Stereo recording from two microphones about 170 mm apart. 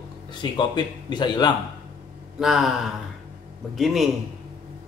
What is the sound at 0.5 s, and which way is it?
A man's voice, 25° left (ahead or behind).